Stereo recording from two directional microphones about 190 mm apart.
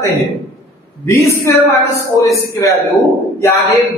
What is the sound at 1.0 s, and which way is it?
A man's voice, 15° left (ahead or behind).